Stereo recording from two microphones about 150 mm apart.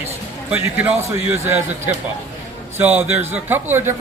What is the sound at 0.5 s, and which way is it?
Speech, 15° right (ahead or behind).